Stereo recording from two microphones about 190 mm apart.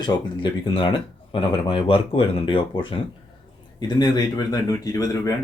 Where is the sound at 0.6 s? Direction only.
25° left (ahead or behind).